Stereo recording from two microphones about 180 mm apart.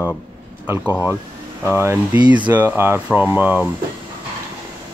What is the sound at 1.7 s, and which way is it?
Speech, 15° right (ahead or behind).